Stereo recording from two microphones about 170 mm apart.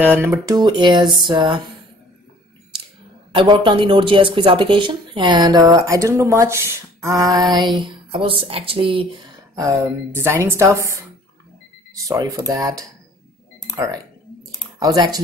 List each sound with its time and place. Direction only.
0.0 s a woman's voice: 10° right (ahead or behind)
0.6 s speech: 25° right (ahead or behind)
3.3 s speech: 30° right (ahead or behind)
9.6 s a woman's voice: 15° right (ahead or behind)
12.1 s speech: 20° right (ahead or behind)
14.8 s speech: 20° right (ahead or behind)